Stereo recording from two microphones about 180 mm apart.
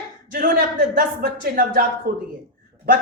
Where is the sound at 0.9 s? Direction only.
55° right (ahead or behind).